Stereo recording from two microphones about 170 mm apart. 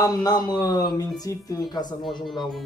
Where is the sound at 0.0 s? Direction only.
20° left (ahead or behind).